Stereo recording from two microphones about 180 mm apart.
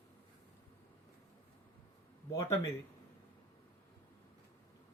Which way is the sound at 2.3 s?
15° left (ahead or behind).